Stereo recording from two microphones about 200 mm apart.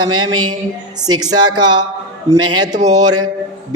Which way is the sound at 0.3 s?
20° right (ahead or behind).